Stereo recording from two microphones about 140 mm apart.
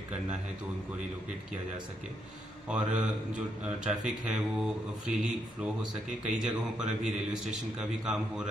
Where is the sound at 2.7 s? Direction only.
10° right (ahead or behind).